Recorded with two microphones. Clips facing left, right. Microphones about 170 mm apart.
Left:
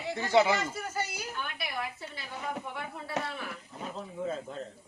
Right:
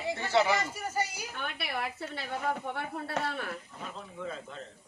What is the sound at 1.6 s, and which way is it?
A woman's voice, 65° right (ahead or behind).